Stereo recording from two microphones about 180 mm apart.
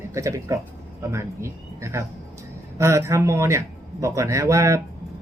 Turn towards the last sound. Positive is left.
turn(degrees=-15)  # may be behind; listen again after turning